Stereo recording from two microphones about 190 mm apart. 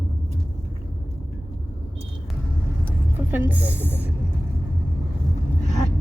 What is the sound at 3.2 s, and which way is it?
Speech, 10° right (ahead or behind).